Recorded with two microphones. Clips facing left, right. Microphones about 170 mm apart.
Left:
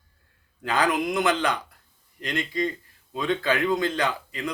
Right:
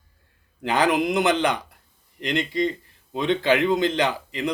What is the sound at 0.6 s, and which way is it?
Speech, 20° right (ahead or behind).